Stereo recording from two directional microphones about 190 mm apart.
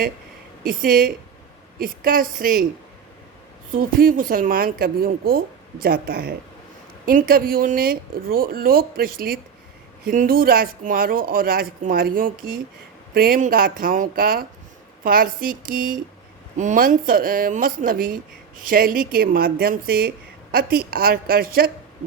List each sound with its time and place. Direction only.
0.6 s speech: 50° right (ahead or behind)
3.7 s speech: 45° right (ahead or behind)